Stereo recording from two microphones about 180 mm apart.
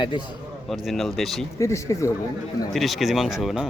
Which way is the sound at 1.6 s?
15° left (ahead or behind).